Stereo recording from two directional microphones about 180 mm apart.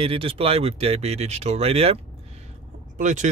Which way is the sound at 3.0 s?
40° right (ahead or behind).